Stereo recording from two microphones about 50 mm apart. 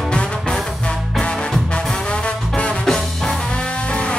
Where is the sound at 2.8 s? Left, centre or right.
Centre.